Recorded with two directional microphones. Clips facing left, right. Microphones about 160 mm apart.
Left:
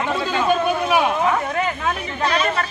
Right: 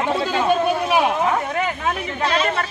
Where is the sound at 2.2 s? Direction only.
25° right (ahead or behind).